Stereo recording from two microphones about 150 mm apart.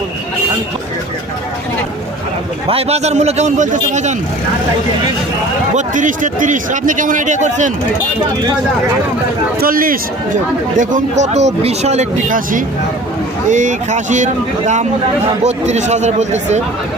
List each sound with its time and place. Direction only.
2.6 s speech: 40° right (ahead or behind)
5.7 s a man's voice: 60° right (ahead or behind)
9.6 s a man's voice: 70° right (ahead or behind)
10.8 s a man's voice: 55° right (ahead or behind)
15.4 s speech: 50° right (ahead or behind)